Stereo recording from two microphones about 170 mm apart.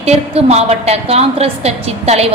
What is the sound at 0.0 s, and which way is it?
A woman's voice, 35° right (ahead or behind).